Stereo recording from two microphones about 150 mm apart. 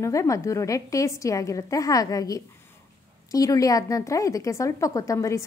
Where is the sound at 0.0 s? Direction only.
20° left (ahead or behind).